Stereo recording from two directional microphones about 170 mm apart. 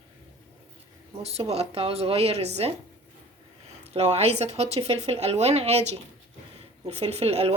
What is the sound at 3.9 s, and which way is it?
A woman's voice, 40° right (ahead or behind).